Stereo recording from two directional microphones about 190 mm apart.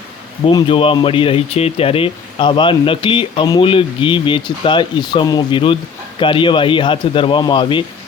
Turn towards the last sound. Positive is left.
turn(degrees=25)  # may be behind; listen again after turning